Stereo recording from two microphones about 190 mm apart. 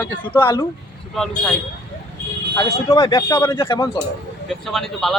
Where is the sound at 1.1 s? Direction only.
Centre (ahead or behind).